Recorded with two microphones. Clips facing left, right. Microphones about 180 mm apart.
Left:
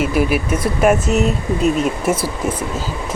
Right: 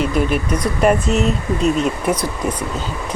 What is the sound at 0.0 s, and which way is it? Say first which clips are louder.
Speech: left 1 dB; 5° left (ahead or behind).